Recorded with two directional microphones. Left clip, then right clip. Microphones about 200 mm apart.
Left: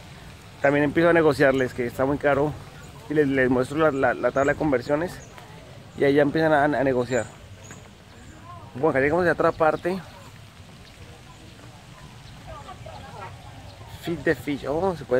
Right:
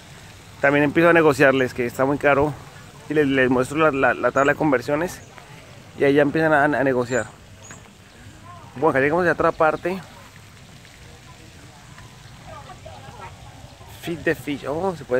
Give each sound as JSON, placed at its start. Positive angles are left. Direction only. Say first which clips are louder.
{"t": 0.6, "sound": "speech", "louder": "right 3 dB", "side_deg": -20}
{"t": 8.8, "sound": "speech", "louder": "right 2 dB", "side_deg": -15}
{"t": 14.0, "sound": "speech", "louder": "right 1 dB", "side_deg": -15}